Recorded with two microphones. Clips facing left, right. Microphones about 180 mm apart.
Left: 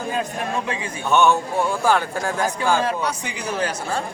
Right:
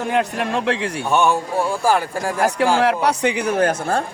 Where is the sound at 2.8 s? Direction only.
70° right (ahead or behind); by 4.0 s 50° right (ahead or behind).